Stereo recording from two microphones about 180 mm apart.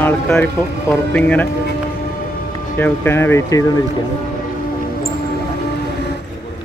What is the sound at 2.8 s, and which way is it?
Speech, 10° left (ahead or behind).